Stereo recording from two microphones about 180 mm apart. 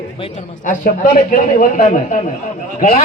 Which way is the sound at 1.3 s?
45° left (ahead or behind).